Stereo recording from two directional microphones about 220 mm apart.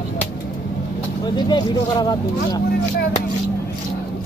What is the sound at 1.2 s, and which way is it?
Speech, 20° left (ahead or behind).